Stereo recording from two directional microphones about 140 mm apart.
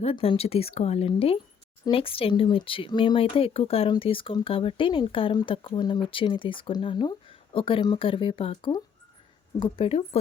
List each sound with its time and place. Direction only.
0.0 s speech: 45° left (ahead or behind)